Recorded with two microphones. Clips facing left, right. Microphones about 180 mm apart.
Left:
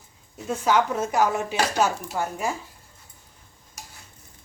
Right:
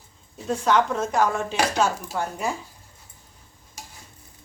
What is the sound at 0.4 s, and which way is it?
Speech, 5° left (ahead or behind).